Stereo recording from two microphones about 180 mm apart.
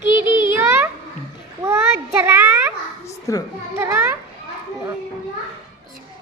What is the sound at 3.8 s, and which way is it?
Children playing, 15° right (ahead or behind).